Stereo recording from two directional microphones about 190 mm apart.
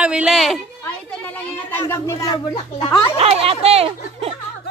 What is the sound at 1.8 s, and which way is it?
Speech, 15° left (ahead or behind).